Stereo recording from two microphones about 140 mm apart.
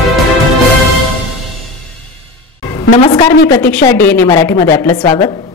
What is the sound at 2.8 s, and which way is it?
Speech, 40° left (ahead or behind).